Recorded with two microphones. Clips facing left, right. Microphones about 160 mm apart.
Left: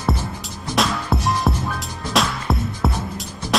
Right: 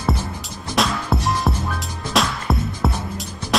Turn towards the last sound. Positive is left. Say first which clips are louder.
# even
turn(degrees=0)  # may be behind; listen again after turning